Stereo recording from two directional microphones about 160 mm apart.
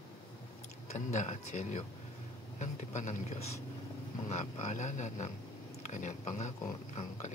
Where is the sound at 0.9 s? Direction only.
50° left (ahead or behind).